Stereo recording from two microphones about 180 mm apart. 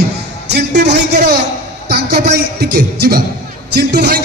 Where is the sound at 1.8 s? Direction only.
60° right (ahead or behind).